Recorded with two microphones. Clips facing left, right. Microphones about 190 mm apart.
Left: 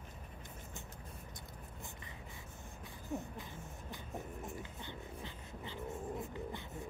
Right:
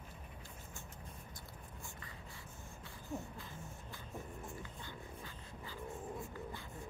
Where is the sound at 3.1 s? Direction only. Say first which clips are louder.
Left 3 dB; 15° left (ahead or behind).